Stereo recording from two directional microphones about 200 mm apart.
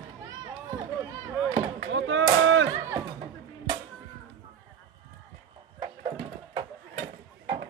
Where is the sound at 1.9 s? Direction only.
70° right (ahead or behind).